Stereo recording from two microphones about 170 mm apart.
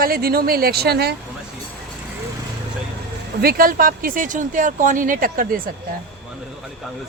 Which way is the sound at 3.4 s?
60° right (ahead or behind).